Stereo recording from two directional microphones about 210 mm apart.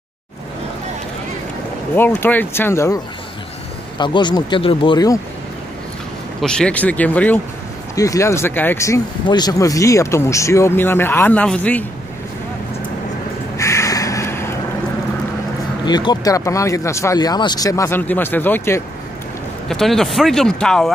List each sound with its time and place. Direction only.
2.0 s speech: 10° left (ahead or behind)
4.0 s speech: 20° left (ahead or behind)
6.4 s speech: 5° left (ahead or behind)
13.6 s crow: 15° left (ahead or behind)
15.8 s speech: 20° left (ahead or behind); by 20.9 s 5° left (ahead or behind)